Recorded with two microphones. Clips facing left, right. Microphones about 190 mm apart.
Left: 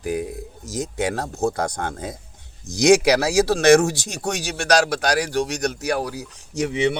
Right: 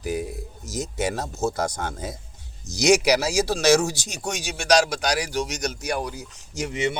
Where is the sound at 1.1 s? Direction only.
60° left (ahead or behind).